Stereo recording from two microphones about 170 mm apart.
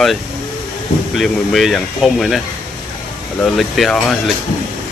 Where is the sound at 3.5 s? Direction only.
Centre (ahead or behind).